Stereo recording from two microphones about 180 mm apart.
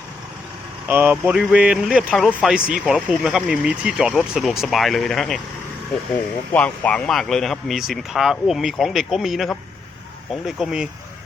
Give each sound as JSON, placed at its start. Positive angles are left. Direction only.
{"t": 0.9, "sound": "speech", "side_deg": -10}
{"t": 6.5, "sound": "speech", "side_deg": 10}